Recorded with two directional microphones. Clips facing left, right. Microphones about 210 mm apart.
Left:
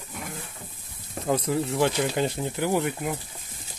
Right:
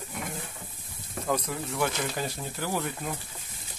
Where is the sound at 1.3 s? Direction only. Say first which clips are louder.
Left 6 dB; 30° left (ahead or behind).